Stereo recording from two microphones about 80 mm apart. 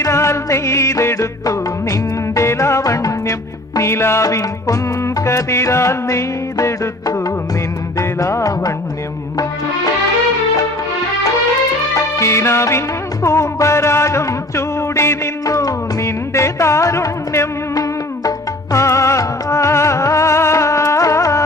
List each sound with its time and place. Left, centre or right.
0.0 s music: left
3.8 s music: left
11.9 s music: left